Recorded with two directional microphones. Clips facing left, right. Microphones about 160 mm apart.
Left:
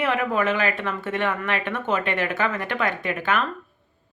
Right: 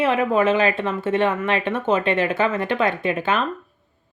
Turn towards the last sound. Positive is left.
turn(degrees=-25)  # may be behind; listen again after turning